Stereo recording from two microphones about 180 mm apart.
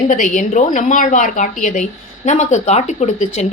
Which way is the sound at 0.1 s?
45° left (ahead or behind).